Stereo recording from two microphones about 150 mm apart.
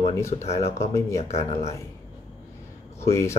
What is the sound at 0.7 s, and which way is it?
Speech, 20° left (ahead or behind).